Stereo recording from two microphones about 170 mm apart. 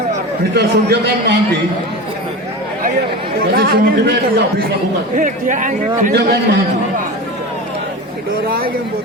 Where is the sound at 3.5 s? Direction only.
65° right (ahead or behind).